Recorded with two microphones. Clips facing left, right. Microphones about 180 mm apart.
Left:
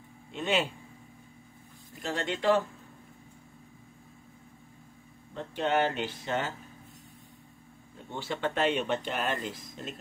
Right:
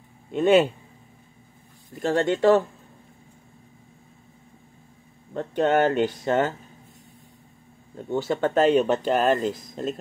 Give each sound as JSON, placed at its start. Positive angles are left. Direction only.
{"t": 0.3, "sound": "speech", "side_deg": -45}
{"t": 2.0, "sound": "speech", "side_deg": -45}
{"t": 5.3, "sound": "speech", "side_deg": -50}
{"t": 8.1, "sound": "speech", "side_deg": -45}